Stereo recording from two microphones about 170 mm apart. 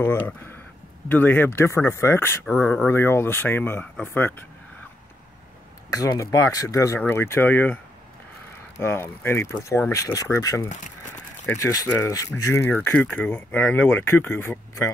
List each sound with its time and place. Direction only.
0.0 s speech: 10° left (ahead or behind)
5.9 s speech: 20° left (ahead or behind)